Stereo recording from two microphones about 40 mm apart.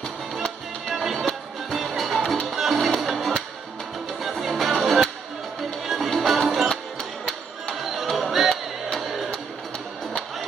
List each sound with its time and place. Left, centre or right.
0.9 s music: centre
7.8 s music: centre